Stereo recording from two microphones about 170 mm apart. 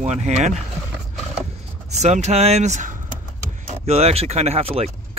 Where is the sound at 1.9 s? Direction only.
40° right (ahead or behind).